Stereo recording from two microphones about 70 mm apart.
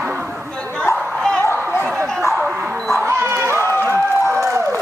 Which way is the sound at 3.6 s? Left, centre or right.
Left.